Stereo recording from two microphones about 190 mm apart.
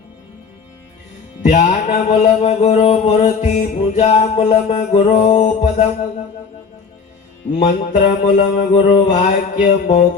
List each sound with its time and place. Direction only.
1.5 s mantra: 40° left (ahead or behind)
7.6 s mantra: 40° left (ahead or behind)
8.5 s music: 45° left (ahead or behind)